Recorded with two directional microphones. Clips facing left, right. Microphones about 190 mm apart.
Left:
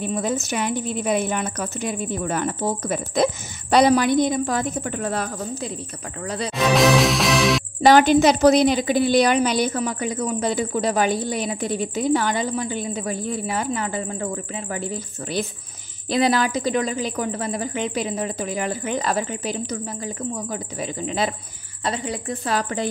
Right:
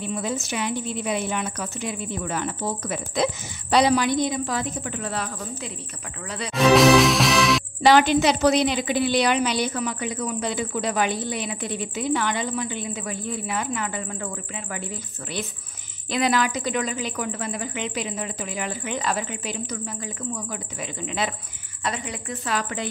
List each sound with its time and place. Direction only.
0.0 s a woman's voice: 45° left (ahead or behind)
6.5 s music: centre (ahead or behind)
7.8 s a woman's voice: 45° left (ahead or behind)